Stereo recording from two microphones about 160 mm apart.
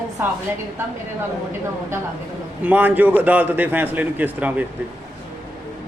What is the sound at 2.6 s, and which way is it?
A man's voice, 10° right (ahead or behind).